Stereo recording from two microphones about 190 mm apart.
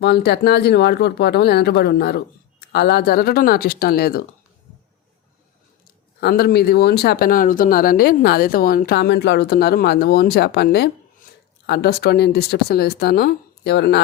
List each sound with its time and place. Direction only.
0.0 s speech: 60° left (ahead or behind)
6.1 s speech: 55° left (ahead or behind)